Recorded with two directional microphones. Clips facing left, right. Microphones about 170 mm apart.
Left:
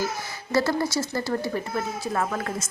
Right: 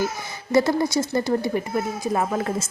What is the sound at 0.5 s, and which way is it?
Speech, 20° right (ahead or behind).